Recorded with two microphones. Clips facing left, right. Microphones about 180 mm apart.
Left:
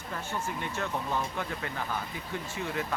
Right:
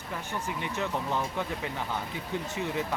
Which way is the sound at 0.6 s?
15° right (ahead or behind).